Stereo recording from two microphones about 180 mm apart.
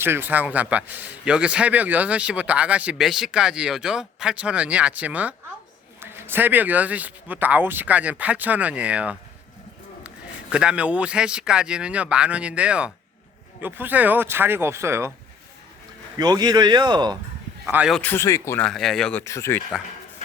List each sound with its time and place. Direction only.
0.0 s a man's voice: 10° right (ahead or behind)
10.5 s a man's voice: 5° right (ahead or behind)
16.1 s a man's voice: 20° right (ahead or behind)
17.7 s speech: 5° right (ahead or behind)
18.0 s speech: 15° left (ahead or behind)
18.7 s speech: centre (ahead or behind)
19.2 s speech: 15° left (ahead or behind)